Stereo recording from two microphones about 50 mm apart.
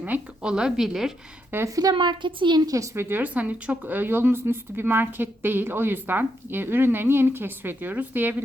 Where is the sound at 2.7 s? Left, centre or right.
Right.